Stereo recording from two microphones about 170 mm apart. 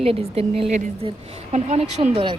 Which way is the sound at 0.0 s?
35° right (ahead or behind).